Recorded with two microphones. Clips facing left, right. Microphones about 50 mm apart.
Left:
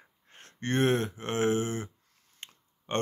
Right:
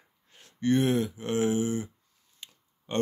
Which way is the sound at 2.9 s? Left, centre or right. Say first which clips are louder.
Right 2 dB; left.